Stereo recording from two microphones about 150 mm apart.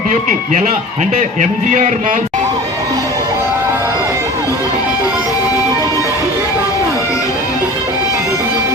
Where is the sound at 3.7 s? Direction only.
15° right (ahead or behind).